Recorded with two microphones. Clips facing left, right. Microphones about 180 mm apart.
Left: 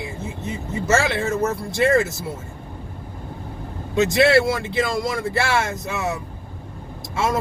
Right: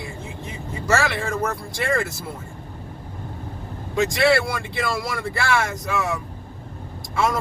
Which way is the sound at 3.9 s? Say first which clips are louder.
Left 3 dB; 20° left (ahead or behind).